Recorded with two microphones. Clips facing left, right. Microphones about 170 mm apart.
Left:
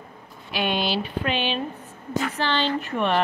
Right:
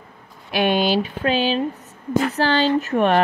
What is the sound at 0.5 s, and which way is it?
Speech, 50° right (ahead or behind).